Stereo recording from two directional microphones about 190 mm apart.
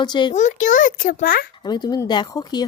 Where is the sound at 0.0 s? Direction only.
25° left (ahead or behind).